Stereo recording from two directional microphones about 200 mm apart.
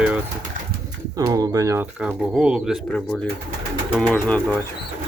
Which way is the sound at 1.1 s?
20° right (ahead or behind).